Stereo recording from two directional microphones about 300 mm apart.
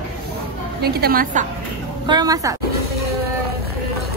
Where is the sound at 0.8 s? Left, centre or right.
Right.